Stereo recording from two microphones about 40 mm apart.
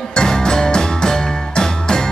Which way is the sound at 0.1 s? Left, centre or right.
Centre.